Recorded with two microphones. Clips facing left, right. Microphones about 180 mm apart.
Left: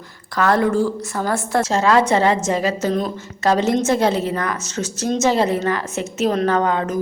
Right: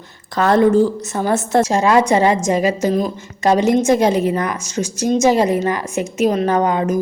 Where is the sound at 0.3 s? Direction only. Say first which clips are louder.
Right 4 dB; 25° right (ahead or behind).